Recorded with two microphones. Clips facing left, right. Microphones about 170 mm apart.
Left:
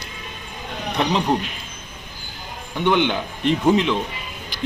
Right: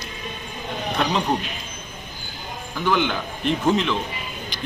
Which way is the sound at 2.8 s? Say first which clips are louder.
Left 3 dB; 20° left (ahead or behind).